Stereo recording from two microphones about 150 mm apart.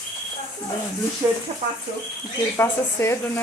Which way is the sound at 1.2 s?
15° right (ahead or behind).